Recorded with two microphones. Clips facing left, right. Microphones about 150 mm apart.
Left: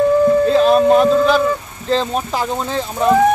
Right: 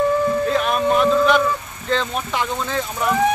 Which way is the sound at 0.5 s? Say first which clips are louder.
Left 7 dB; 30° left (ahead or behind).